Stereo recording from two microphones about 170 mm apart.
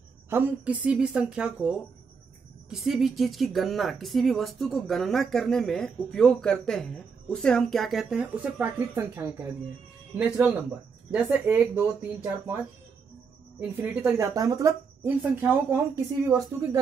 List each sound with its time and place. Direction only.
0.3 s speech: 10° right (ahead or behind)
13.6 s speech: 10° right (ahead or behind)